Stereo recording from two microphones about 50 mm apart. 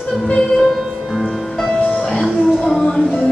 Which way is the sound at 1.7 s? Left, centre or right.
Left.